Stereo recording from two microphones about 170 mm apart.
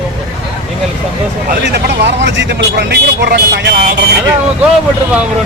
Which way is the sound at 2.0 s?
90° right.